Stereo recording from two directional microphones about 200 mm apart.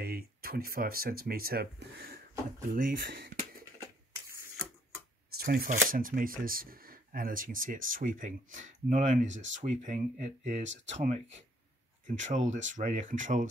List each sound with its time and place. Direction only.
0.0 s speech: 50° right (ahead or behind)
5.4 s speech: 45° right (ahead or behind)